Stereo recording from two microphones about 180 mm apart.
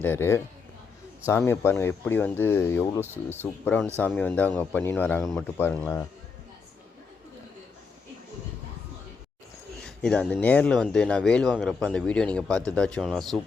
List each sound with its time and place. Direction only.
0.0 s speech: 10° left (ahead or behind)
5.2 s a man's voice: centre (ahead or behind)
5.5 s speech: 10° left (ahead or behind)
9.8 s a man's voice: 5° left (ahead or behind)